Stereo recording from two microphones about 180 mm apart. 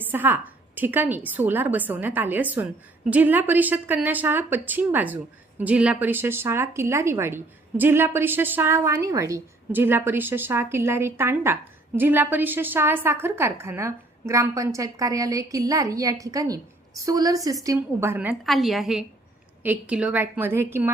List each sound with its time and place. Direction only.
0.0 s a woman's voice: 10° right (ahead or behind)